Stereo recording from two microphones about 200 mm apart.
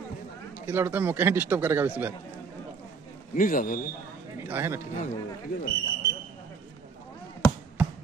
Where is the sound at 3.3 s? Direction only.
45° left (ahead or behind).